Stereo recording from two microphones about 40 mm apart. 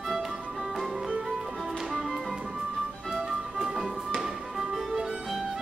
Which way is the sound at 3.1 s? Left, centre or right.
Centre.